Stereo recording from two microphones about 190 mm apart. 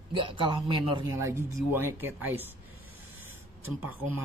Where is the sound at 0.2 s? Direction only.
25° right (ahead or behind).